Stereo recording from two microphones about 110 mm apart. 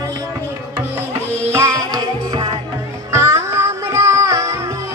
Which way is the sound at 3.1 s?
25° right (ahead or behind).